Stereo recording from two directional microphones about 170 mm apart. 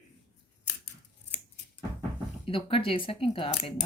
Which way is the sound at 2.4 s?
30° left (ahead or behind).